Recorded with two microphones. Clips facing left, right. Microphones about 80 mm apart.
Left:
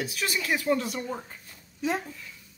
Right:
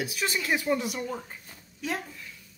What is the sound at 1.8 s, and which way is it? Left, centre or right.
Speech, left.